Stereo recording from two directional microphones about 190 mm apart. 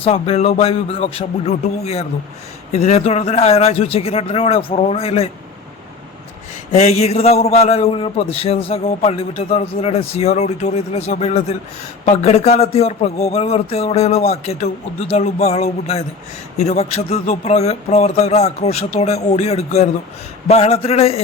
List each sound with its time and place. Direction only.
0.0 s a man's voice: 30° left (ahead or behind)
6.7 s a man's voice: 35° left (ahead or behind)